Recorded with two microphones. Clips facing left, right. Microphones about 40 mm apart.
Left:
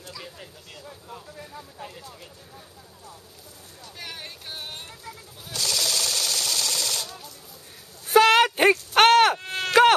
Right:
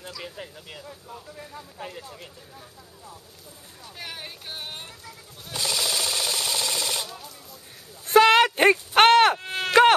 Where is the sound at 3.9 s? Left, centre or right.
Centre.